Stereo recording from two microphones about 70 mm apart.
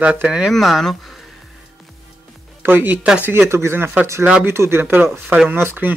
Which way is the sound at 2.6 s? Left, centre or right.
Right.